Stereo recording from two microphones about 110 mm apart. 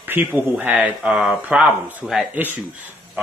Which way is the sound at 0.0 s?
15° right (ahead or behind).